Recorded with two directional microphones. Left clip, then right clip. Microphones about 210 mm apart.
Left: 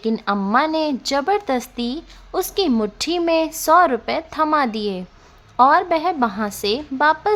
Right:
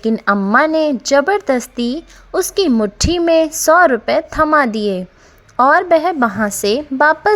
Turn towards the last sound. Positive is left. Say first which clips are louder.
# right 5 dB
turn(degrees=-30)  # may be behind; listen again after turning